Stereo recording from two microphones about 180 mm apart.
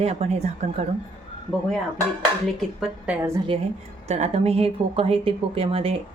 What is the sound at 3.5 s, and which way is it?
A woman's voice, 30° right (ahead or behind).